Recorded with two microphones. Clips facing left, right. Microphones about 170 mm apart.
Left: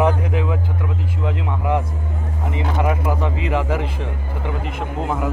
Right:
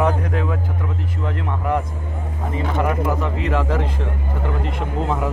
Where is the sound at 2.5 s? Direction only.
10° left (ahead or behind).